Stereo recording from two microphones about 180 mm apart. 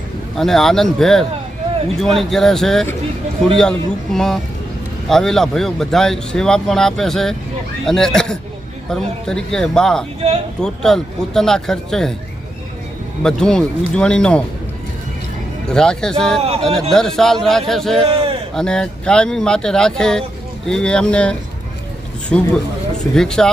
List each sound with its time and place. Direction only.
0.3 s speech: centre (ahead or behind)
13.2 s speech: 5° left (ahead or behind)
15.6 s speech: 5° left (ahead or behind)
18.0 s a sound: 35° right (ahead or behind)
18.5 s speech: 5° left (ahead or behind)